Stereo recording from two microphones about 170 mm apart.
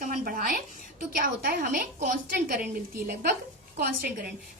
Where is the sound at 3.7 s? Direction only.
65° right (ahead or behind).